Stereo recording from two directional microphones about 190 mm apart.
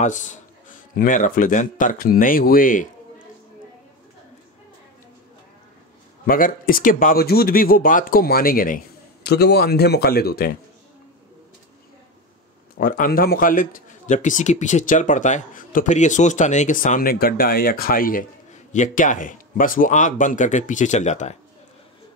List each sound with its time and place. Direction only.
0.0 s a man's voice: 40° left (ahead or behind)
6.2 s a man's voice: 50° left (ahead or behind)
12.7 s a man's voice: 45° left (ahead or behind)